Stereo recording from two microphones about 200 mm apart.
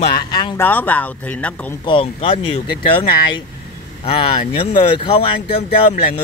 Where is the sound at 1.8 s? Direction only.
25° left (ahead or behind).